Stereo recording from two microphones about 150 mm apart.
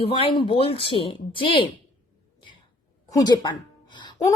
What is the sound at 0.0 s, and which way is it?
A woman's voice, 35° left (ahead or behind).